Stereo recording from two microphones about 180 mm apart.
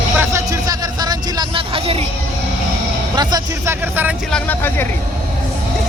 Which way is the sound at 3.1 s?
20° right (ahead or behind).